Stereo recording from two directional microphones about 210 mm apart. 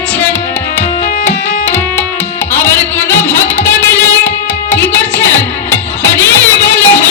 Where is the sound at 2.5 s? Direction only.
10° left (ahead or behind).